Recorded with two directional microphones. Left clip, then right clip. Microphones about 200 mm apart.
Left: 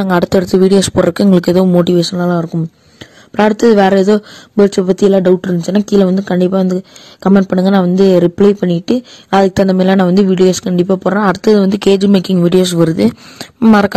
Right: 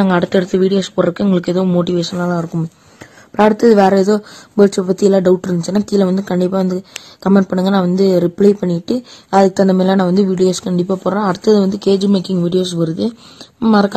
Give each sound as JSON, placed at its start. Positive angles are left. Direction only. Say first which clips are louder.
{"t": 0.0, "sound": "speech", "louder": "left 2 dB", "side_deg": 50}
{"t": 3.6, "sound": "speech", "louder": "left 3 dB", "side_deg": 35}